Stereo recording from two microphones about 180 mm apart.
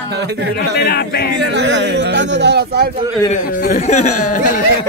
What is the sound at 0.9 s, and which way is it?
Speech, 60° left (ahead or behind).